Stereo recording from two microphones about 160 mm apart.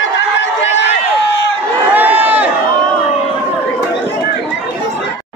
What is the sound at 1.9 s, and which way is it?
Run, 10° right (ahead or behind).